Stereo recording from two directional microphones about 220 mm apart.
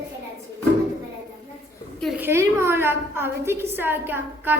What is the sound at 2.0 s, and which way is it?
A woman's voice, 5° right (ahead or behind).